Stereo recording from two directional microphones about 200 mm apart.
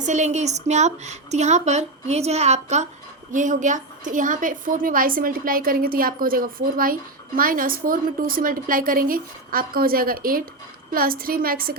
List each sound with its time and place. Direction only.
0.0 s a woman's voice: 35° right (ahead or behind)